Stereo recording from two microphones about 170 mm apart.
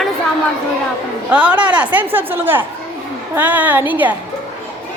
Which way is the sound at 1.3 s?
10° right (ahead or behind).